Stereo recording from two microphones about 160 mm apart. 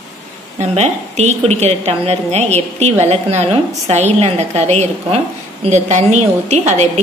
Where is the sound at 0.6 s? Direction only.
45° right (ahead or behind).